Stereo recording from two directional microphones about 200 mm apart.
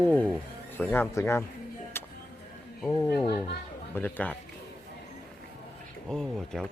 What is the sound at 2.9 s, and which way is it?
Speech, 15° left (ahead or behind).